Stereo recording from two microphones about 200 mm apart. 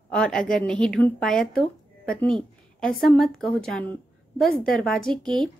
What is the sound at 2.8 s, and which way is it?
A woman's voice, centre (ahead or behind).